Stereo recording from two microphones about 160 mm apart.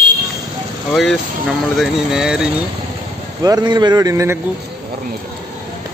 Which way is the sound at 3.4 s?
25° right (ahead or behind).